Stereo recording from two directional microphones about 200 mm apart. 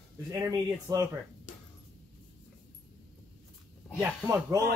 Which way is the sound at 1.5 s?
40° left (ahead or behind).